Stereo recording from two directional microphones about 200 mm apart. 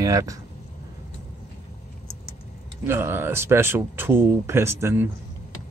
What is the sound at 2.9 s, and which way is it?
Speech, 10° right (ahead or behind).